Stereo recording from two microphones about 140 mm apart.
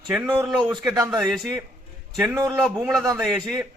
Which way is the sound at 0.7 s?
25° right (ahead or behind).